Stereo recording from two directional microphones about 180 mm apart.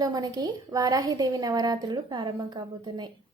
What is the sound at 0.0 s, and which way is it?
A woman's voice, 20° right (ahead or behind).